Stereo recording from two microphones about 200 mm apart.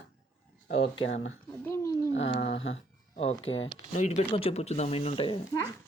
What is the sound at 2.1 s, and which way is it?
Speech, 65° left (ahead or behind).